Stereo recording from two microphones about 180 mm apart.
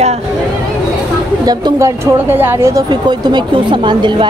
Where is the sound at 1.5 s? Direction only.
20° right (ahead or behind).